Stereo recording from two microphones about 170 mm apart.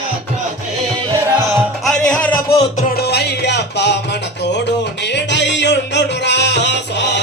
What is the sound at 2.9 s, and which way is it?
Music, 75° left (ahead or behind).